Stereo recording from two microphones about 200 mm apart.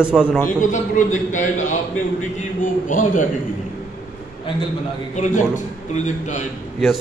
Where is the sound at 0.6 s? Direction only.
40° left (ahead or behind).